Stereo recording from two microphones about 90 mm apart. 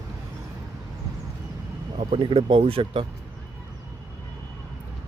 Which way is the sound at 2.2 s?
65° right (ahead or behind).